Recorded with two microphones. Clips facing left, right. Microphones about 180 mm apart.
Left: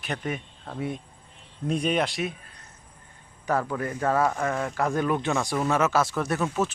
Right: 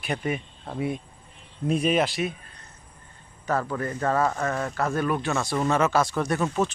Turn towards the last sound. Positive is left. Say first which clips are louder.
# right 1 dB
turn(degrees=5)  # may be behind; listen again after turning